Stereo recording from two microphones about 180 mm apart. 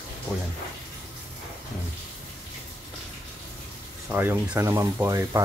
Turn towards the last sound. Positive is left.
turn(degrees=-15)  # may be behind; listen again after turning